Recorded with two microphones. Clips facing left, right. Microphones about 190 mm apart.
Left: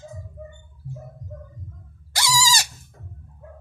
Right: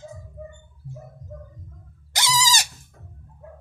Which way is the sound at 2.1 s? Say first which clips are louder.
Left 1 dB; 20° right (ahead or behind).